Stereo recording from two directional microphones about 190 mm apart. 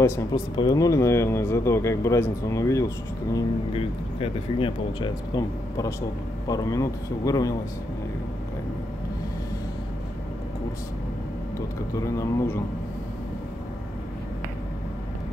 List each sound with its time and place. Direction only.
0.0 s speech: 15° left (ahead or behind)
3.7 s speech: 30° left (ahead or behind)
11.5 s speech: 15° left (ahead or behind)